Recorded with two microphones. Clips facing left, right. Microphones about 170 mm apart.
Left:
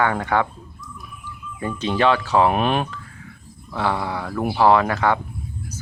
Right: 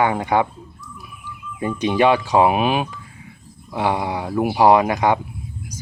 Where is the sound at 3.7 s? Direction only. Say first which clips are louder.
Right 2 dB; 15° right (ahead or behind).